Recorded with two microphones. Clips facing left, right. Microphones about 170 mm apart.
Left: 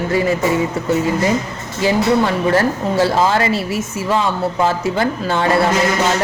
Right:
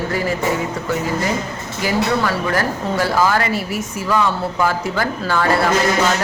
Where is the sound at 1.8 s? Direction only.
25° left (ahead or behind).